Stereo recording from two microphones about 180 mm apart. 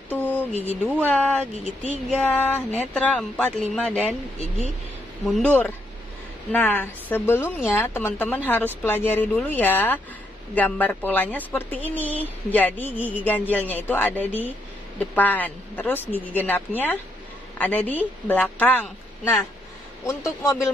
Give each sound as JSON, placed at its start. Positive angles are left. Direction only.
{"t": 0.1, "sound": "a sound", "side_deg": 10}
{"t": 0.7, "sound": "speech", "side_deg": -10}
{"t": 1.0, "sound": "speech", "side_deg": 5}
{"t": 1.6, "sound": "speech", "side_deg": 40}
{"t": 2.0, "sound": "a woman's voice", "side_deg": 10}
{"t": 5.2, "sound": "a woman's voice", "side_deg": 5}